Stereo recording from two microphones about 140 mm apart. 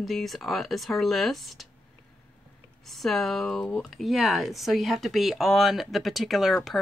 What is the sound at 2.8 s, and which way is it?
Speech, centre (ahead or behind).